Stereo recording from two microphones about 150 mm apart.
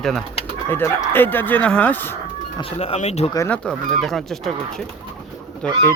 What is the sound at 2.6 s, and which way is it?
Speech, 40° left (ahead or behind).